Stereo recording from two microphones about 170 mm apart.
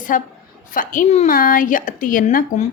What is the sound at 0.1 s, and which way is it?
A woman's voice, 55° left (ahead or behind).